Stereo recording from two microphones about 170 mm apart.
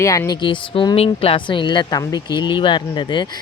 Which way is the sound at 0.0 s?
20° left (ahead or behind).